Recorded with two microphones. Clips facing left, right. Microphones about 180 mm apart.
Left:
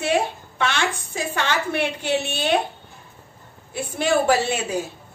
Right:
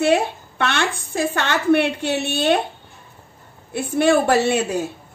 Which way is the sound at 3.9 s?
60° right (ahead or behind).